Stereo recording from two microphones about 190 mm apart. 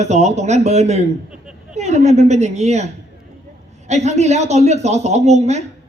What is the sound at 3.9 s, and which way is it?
Speech, 35° right (ahead or behind).